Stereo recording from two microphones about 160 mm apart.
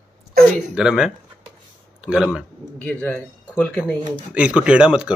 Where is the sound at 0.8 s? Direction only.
5° right (ahead or behind).